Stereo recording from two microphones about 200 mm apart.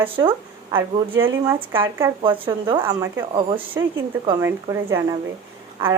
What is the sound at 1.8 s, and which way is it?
Speech, 15° right (ahead or behind).